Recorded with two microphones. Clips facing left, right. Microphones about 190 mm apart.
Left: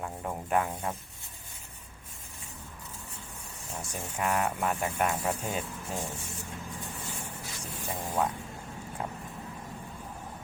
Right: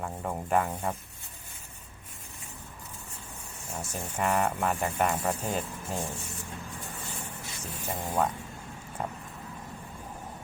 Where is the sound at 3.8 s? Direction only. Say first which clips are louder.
Right 2 dB; 10° left (ahead or behind).